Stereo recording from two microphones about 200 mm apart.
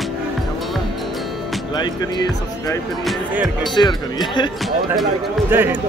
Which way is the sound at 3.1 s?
Centre (ahead or behind).